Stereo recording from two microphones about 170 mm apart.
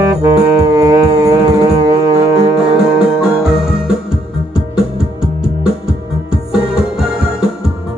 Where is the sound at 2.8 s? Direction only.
5° right (ahead or behind).